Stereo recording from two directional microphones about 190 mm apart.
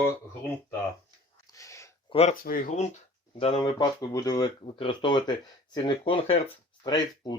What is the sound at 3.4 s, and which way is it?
Speech, 25° left (ahead or behind).